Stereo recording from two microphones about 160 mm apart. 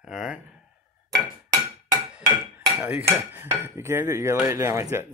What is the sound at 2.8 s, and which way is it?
Speech, 15° right (ahead or behind).